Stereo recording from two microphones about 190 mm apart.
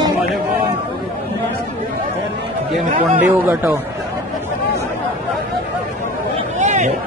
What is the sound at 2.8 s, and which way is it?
Speech, 40° right (ahead or behind).